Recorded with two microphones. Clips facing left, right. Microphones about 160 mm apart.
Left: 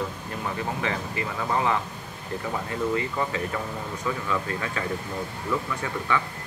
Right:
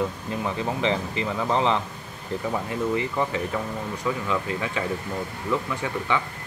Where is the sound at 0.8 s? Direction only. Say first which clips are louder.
Right 4 dB; 25° right (ahead or behind).